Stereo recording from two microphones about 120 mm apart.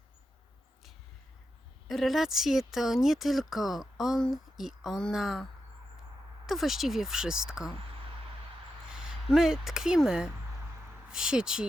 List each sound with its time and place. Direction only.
1.9 s speech: centre (ahead or behind)
8.9 s speech: 5° right (ahead or behind)